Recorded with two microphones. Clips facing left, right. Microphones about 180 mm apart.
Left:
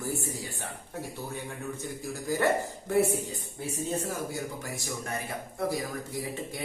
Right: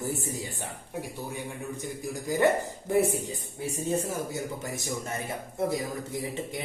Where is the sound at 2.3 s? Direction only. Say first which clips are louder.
Right 2 dB; 20° right (ahead or behind).